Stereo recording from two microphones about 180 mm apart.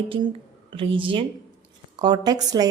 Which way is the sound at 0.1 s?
30° right (ahead or behind).